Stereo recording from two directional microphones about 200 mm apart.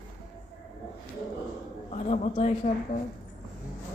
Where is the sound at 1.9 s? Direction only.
35° left (ahead or behind).